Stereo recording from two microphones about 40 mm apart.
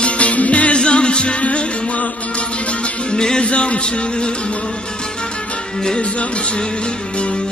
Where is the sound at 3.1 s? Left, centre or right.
Left.